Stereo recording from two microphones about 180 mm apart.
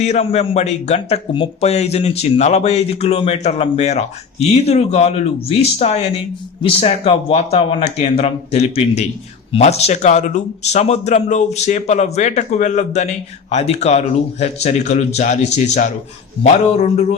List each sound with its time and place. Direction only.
0.0 s speech: 35° left (ahead or behind)